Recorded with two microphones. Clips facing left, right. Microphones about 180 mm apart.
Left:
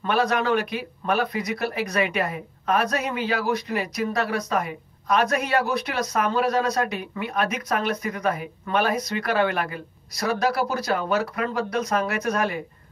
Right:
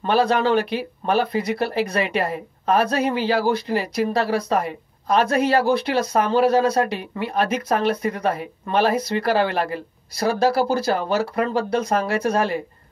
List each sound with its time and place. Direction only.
0.0 s speech: 30° right (ahead or behind)